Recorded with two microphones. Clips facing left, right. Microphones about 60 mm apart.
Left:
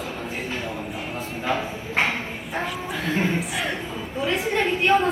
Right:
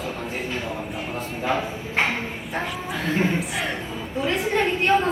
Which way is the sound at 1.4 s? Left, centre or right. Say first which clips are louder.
Right 1 dB; right.